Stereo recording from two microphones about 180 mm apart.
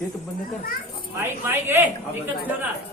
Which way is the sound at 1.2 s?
10° right (ahead or behind).